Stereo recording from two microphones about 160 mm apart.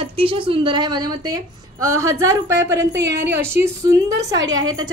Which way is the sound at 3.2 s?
15° right (ahead or behind).